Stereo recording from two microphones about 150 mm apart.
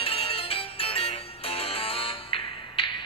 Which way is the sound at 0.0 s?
40° left (ahead or behind).